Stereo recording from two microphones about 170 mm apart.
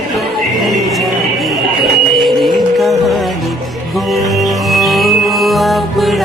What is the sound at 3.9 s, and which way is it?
Music, centre (ahead or behind).